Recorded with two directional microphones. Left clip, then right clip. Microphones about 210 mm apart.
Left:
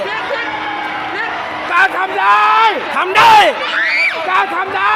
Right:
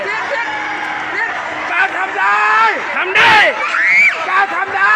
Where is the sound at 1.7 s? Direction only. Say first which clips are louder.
Left 3 dB; 55° left (ahead or behind).